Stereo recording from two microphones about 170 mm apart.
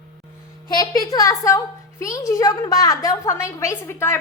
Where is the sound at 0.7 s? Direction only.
20° left (ahead or behind).